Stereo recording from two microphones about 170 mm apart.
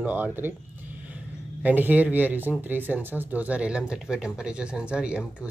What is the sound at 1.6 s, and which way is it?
Speech, 10° right (ahead or behind).